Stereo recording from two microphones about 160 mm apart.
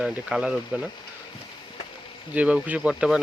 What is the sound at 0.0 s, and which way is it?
Speech, 5° right (ahead or behind).